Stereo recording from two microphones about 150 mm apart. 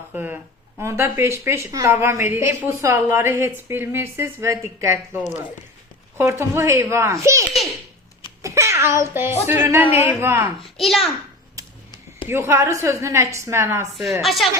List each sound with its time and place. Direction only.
0.1 s a sound: 10° right (ahead or behind)
0.8 s speech: 15° right (ahead or behind)
12.3 s speech: 15° right (ahead or behind)
13.9 s a woman's voice: centre (ahead or behind)